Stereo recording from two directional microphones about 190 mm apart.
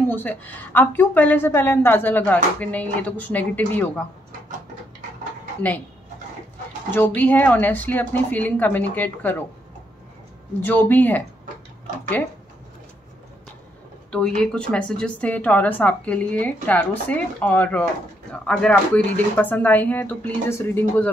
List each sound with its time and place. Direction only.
0.0 s a woman's voice: 10° left (ahead or behind)
6.9 s a woman's voice: 10° left (ahead or behind)
10.6 s a woman's voice: 10° left (ahead or behind)
14.1 s a woman's voice: 5° left (ahead or behind)